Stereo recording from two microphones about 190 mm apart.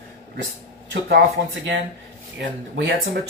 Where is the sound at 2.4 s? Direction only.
70° right (ahead or behind).